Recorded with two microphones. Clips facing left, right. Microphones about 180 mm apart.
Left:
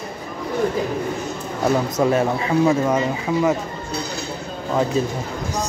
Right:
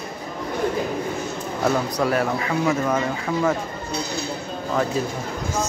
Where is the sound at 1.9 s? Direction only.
25° left (ahead or behind).